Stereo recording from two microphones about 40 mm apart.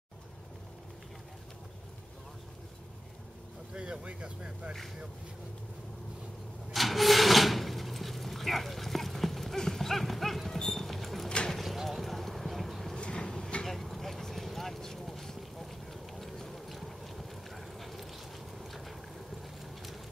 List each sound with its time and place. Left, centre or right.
3.7 s speech: right
6.7 s vehicle: centre
9.6 s livestock: centre
11.2 s vehicle: centre
11.5 s vehicle: centre
12.9 s a sound: left
13.7 s vehicle: centre
18.6 s a sound: centre